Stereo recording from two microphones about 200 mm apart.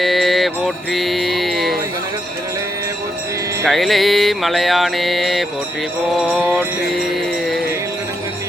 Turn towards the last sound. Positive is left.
turn(degrees=-10)  # may be behind; listen again after turning